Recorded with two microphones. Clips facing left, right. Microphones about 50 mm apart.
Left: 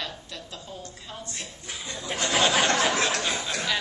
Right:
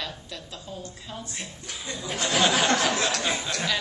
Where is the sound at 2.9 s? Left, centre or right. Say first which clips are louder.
Left 1 dB; left.